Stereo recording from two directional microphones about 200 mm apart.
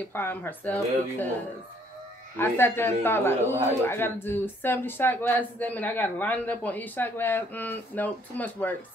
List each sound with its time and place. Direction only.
0.1 s a man's voice: 10° left (ahead or behind)
2.3 s a man's voice: 10° left (ahead or behind)